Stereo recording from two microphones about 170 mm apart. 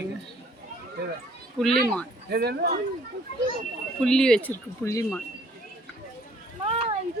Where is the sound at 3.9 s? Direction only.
5° left (ahead or behind).